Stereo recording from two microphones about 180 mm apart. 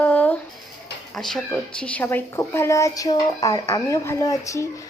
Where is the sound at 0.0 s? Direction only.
5° left (ahead or behind).